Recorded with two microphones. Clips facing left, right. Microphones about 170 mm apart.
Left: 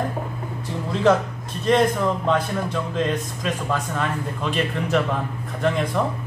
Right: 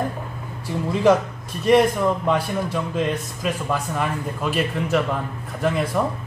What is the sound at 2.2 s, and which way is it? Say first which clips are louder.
A man's voice: even; 10° right (ahead or behind).